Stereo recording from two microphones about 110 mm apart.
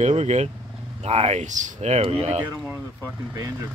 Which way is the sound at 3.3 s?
35° right (ahead or behind).